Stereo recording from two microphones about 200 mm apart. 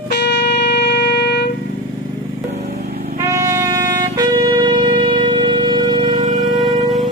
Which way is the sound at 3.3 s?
15° right (ahead or behind).